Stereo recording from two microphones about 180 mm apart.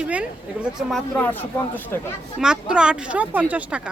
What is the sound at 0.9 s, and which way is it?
Speech, 10° left (ahead or behind).